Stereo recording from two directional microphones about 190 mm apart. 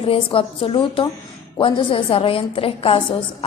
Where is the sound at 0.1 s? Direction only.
30° left (ahead or behind).